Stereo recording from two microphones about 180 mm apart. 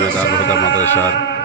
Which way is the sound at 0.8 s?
10° left (ahead or behind).